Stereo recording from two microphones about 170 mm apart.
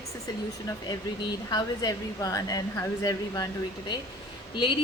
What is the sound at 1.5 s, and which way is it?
A woman's voice, 25° left (ahead or behind).